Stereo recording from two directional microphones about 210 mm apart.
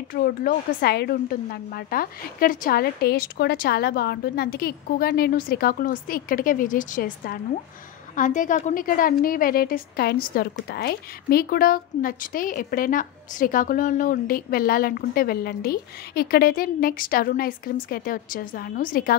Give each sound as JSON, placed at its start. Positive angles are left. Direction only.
{"t": 0.1, "sound": "a woman's voice", "side_deg": 45}